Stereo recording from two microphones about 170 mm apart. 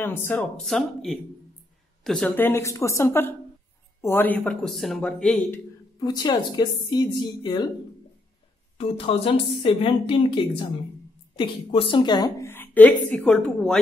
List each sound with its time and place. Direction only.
0.0 s a woman's voice: 10° left (ahead or behind)
5.9 s a woman's voice: 25° left (ahead or behind)
8.7 s a woman's voice: 35° left (ahead or behind); by 13.7 s 5° left (ahead or behind)